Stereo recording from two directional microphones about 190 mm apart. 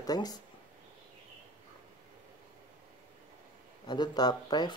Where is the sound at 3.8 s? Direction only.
20° left (ahead or behind).